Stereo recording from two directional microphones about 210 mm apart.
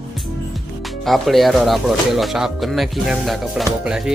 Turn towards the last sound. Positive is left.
turn(degrees=-5)  # may be behind; listen again after turning